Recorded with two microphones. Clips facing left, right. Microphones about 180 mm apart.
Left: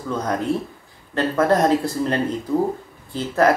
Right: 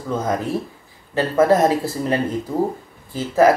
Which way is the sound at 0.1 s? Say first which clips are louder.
Right 1 dB; 5° right (ahead or behind).